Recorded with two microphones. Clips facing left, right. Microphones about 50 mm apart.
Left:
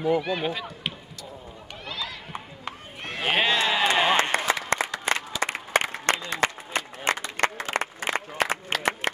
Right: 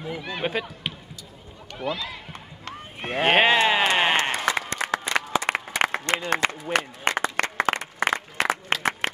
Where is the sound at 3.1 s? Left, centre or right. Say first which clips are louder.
Right 5 dB; right.